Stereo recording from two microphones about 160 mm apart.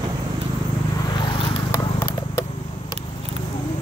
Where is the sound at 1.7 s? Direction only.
25° left (ahead or behind).